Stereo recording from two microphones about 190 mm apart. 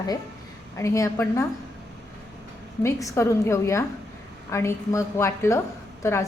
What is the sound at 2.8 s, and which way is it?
A woman's voice, 15° left (ahead or behind).